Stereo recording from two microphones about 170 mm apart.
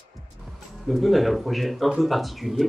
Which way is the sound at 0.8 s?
Centre (ahead or behind).